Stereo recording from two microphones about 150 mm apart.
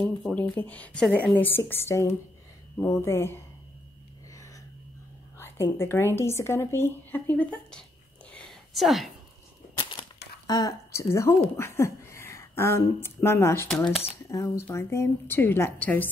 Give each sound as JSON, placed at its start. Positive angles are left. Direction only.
{"t": 0.2, "sound": "a woman's voice", "side_deg": 10}
{"t": 5.4, "sound": "a woman's voice", "side_deg": 15}
{"t": 8.3, "sound": "a sound", "side_deg": 5}
{"t": 10.4, "sound": "a woman's voice", "side_deg": 25}